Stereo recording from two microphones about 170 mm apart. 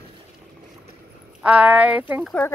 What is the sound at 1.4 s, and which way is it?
Speech, 5° right (ahead or behind).